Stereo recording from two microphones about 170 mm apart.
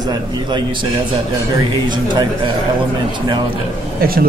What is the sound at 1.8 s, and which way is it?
A man's voice, 25° right (ahead or behind).